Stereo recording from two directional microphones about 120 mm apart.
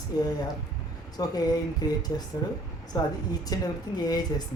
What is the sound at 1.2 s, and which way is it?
A woman's voice, 35° left (ahead or behind).